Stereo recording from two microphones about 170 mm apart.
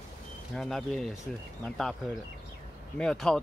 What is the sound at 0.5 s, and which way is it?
Speech, centre (ahead or behind).